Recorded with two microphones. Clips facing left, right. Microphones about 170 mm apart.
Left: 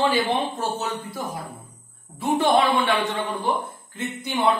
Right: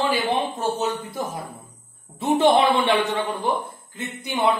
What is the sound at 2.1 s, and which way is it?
Speech, 20° right (ahead or behind).